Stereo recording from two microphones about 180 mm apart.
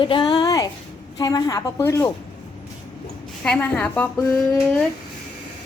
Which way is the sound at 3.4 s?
5° left (ahead or behind).